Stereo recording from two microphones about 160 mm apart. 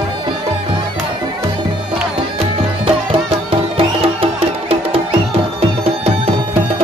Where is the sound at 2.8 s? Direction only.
35° right (ahead or behind).